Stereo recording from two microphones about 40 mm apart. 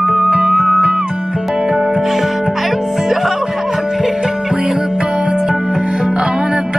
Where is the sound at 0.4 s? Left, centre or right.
Centre.